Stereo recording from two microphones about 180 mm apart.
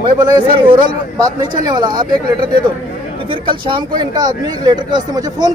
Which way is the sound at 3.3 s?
25° right (ahead or behind).